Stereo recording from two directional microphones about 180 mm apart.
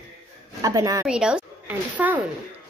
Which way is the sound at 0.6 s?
20° right (ahead or behind).